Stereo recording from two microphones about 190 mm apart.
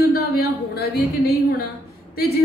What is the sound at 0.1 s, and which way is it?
A woman's voice, 55° left (ahead or behind).